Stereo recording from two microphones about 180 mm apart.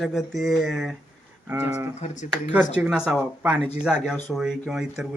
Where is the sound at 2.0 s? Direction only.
40° left (ahead or behind).